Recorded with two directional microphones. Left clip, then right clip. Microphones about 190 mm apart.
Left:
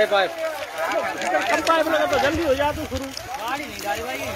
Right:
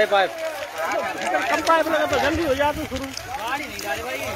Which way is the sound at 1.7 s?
50° right (ahead or behind).